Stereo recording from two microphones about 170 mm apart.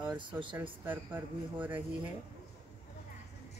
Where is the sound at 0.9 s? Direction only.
10° right (ahead or behind).